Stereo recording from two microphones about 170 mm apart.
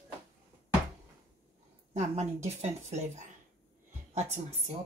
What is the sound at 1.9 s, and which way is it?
Speech, 40° right (ahead or behind).